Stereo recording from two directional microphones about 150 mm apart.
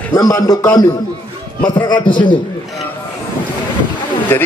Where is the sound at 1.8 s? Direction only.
30° left (ahead or behind).